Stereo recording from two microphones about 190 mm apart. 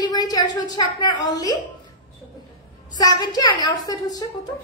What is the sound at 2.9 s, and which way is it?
A woman's voice, 20° left (ahead or behind).